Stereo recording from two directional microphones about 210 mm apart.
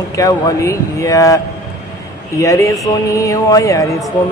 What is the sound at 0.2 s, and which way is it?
Speech, 15° left (ahead or behind).